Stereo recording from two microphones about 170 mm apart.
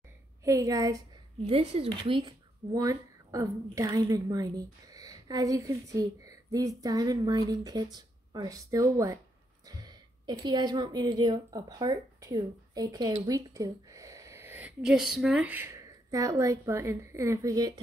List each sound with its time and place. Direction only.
0.4 s a woman's voice: 20° right (ahead or behind)
1.5 s a woman's voice: 35° right (ahead or behind)